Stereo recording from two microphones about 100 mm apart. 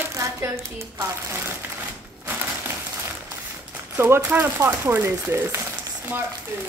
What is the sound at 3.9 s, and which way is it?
Speech, 20° right (ahead or behind).